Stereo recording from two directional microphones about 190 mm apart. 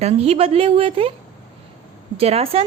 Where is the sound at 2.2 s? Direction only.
30° right (ahead or behind).